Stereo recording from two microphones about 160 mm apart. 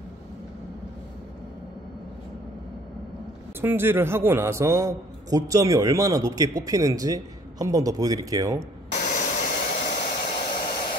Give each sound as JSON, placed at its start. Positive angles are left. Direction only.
{"t": 3.6, "sound": "a man's voice", "side_deg": -15}
{"t": 8.9, "sound": "hair dryer", "side_deg": 60}